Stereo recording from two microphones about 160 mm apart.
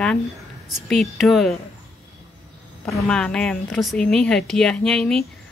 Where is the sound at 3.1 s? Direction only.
5° left (ahead or behind).